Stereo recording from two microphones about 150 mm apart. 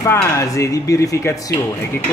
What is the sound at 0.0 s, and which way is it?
A man's voice, 20° left (ahead or behind).